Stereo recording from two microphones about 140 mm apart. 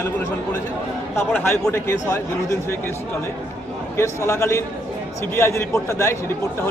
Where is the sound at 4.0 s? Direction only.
20° left (ahead or behind).